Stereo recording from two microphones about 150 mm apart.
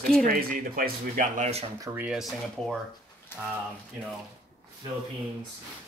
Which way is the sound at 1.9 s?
5° right (ahead or behind).